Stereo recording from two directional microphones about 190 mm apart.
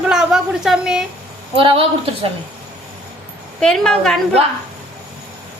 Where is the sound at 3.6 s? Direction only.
5° left (ahead or behind).